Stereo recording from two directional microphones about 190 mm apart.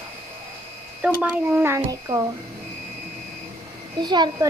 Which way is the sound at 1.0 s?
5° right (ahead or behind).